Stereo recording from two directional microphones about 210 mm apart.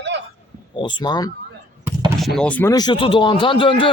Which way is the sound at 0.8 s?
20° left (ahead or behind).